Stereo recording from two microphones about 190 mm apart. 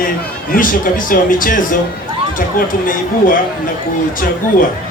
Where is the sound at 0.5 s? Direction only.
45° left (ahead or behind).